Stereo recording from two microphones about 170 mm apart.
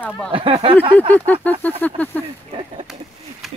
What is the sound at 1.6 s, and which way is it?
Speech, 10° left (ahead or behind).